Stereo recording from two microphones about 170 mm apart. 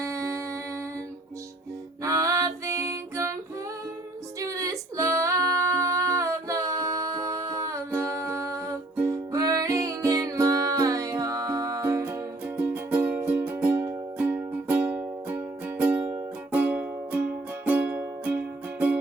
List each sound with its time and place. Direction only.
0.0 s humming: 15° right (ahead or behind)
2.0 s music: 20° right (ahead or behind)
4.4 s female singing: 20° right (ahead or behind)